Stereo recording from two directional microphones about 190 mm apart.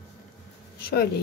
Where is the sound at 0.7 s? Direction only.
55° left (ahead or behind).